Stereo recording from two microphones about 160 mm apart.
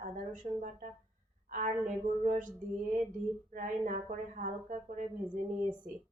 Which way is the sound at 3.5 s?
55° right (ahead or behind).